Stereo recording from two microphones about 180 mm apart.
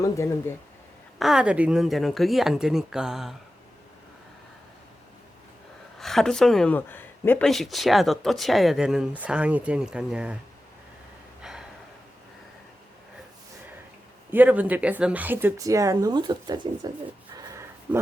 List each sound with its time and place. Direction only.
0.0 s speech: 15° left (ahead or behind)
1.2 s speech: 5° right (ahead or behind)
6.0 s speech: centre (ahead or behind)
11.4 s gasp: centre (ahead or behind)
14.3 s speech: 10° right (ahead or behind); by 16.9 s 25° right (ahead or behind)
17.3 s a sound: 15° right (ahead or behind)